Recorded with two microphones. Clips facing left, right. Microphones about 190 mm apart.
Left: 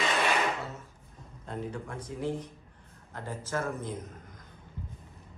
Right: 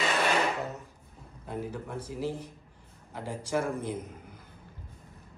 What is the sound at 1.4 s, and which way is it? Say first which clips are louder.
Speech: right 1 dB; 5° right (ahead or behind).